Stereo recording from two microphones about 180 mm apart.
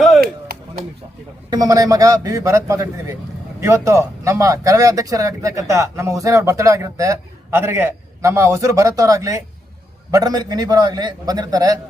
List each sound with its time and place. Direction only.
1.5 s a man's voice: 20° right (ahead or behind)